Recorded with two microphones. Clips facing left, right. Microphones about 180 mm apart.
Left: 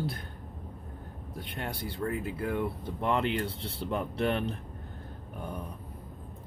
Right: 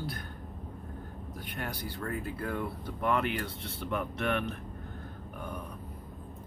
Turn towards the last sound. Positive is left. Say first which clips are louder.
# left 2 dB
turn(degrees=30)  # may be behind; listen again after turning